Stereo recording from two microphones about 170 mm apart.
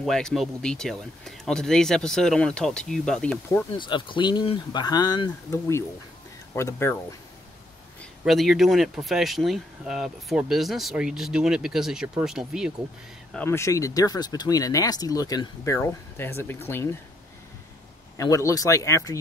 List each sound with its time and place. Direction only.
0.0 s speech: centre (ahead or behind)
3.7 s speech: 30° left (ahead or behind)
8.0 s speech: centre (ahead or behind)
13.3 s speech: 10° left (ahead or behind)
18.1 s speech: 20° left (ahead or behind)